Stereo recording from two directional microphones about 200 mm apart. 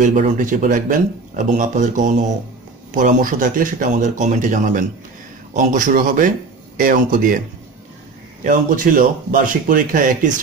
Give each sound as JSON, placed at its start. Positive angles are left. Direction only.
{"t": 0.0, "sound": "a man's voice", "side_deg": -40}
{"t": 8.5, "sound": "a man's voice", "side_deg": -40}